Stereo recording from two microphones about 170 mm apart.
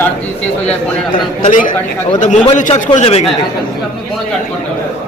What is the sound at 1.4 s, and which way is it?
A man's voice, 50° left (ahead or behind).